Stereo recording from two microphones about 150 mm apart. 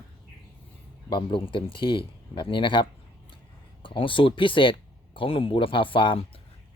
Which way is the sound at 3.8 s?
35° left (ahead or behind).